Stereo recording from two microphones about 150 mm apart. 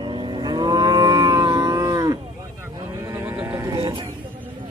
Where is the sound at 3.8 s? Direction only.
30° right (ahead or behind).